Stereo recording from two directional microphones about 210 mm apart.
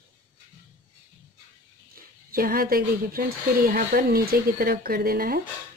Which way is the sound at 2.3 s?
45° right (ahead or behind).